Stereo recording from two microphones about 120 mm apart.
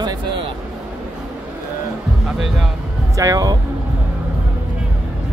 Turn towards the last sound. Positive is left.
turn(degrees=-30)  # may be behind; listen again after turning